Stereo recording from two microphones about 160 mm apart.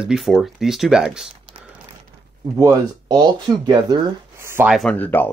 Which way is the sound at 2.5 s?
20° right (ahead or behind).